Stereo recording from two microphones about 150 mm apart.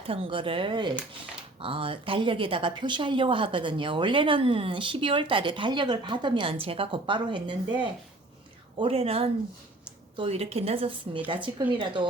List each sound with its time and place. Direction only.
0.0 s a woman's voice: 40° right (ahead or behind)